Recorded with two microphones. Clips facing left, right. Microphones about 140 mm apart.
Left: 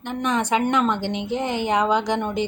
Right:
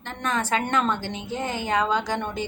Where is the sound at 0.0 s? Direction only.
15° left (ahead or behind).